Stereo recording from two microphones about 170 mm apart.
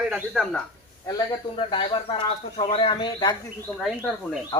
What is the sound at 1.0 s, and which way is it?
Speech, 25° left (ahead or behind).